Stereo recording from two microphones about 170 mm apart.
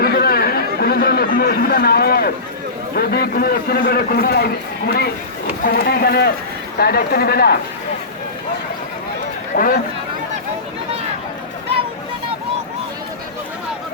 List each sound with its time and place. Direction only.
0.0 s chatter: 65° left (ahead or behind)
2.9 s a man's voice: 65° left (ahead or behind)
9.6 s speech: 55° left (ahead or behind)